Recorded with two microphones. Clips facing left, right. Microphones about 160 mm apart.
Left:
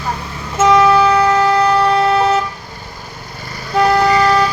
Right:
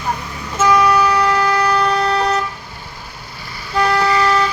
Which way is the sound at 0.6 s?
25° left (ahead or behind).